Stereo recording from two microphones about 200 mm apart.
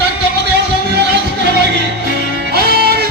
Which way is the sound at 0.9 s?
55° right (ahead or behind).